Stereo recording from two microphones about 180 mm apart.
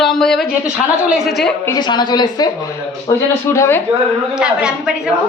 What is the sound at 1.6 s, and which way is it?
Speech, 20° left (ahead or behind).